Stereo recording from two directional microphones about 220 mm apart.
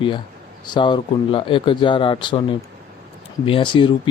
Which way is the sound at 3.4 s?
25° left (ahead or behind).